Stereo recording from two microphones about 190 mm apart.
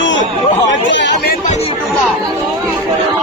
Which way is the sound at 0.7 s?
70° left (ahead or behind).